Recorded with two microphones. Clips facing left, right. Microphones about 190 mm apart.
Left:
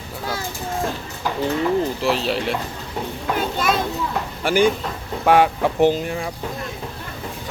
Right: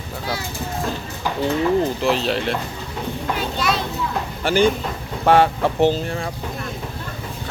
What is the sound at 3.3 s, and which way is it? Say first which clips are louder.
Speech: left 3 dB; 50° left (ahead or behind).